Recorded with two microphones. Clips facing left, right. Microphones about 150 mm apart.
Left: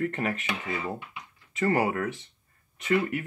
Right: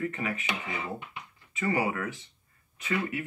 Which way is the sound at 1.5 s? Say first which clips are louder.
Left 4 dB; 50° left (ahead or behind).